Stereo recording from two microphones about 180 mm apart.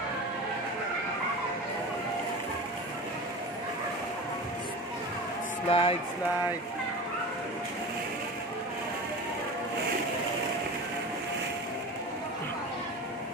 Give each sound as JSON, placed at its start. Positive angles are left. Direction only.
{"t": 5.7, "sound": "speech", "side_deg": 30}